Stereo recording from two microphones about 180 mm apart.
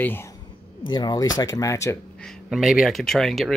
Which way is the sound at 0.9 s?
25° left (ahead or behind).